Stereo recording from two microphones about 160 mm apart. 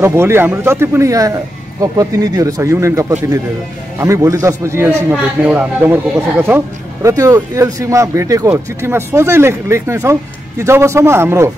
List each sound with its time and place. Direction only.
0.0 s speech: 15° right (ahead or behind)